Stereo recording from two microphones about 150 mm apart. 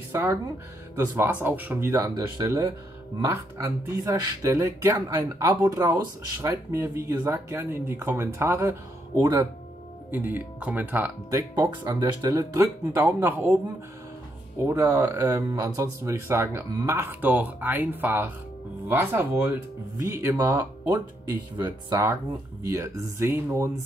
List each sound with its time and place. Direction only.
0.1 s speech: 20° right (ahead or behind)
1.9 s speech: 25° right (ahead or behind)
7.0 s speech: 20° right (ahead or behind)
10.1 s speech: 10° right (ahead or behind)
14.6 s speech: 15° right (ahead or behind)
22.7 s speech: 20° right (ahead or behind)